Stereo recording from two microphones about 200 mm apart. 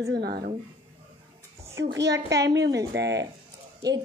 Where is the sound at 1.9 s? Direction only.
60° right (ahead or behind).